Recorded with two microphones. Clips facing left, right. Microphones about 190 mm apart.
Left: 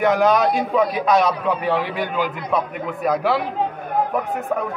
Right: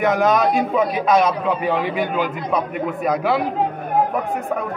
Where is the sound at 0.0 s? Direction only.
Centre (ahead or behind).